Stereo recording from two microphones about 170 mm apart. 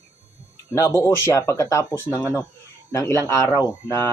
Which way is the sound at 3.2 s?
15° left (ahead or behind).